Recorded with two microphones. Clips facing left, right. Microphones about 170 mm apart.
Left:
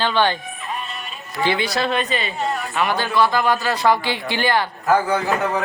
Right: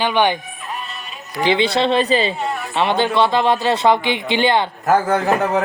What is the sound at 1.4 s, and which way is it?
A man's voice, 25° right (ahead or behind).